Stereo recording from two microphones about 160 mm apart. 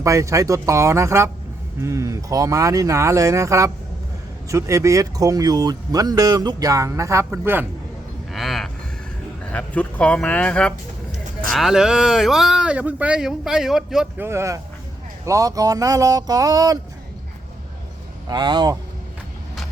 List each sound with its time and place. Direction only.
0.0 s speech: 20° right (ahead or behind)
8.3 s vehicle: centre (ahead or behind)
9.4 s speech: 10° left (ahead or behind)
14.3 s speech: 15° right (ahead or behind)
18.3 s speech: 25° right (ahead or behind)